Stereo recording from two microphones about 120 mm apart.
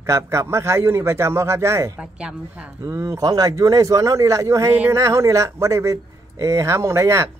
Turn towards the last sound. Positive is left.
turn(degrees=-25)  # may be behind; listen again after turning